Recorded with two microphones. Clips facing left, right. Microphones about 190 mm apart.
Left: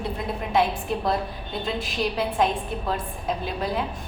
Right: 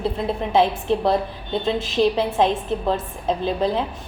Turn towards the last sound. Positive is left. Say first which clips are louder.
# right 6 dB
turn(degrees=-30)  # may be behind; listen again after turning